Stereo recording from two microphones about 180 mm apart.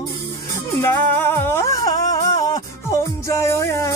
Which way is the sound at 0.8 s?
15° left (ahead or behind).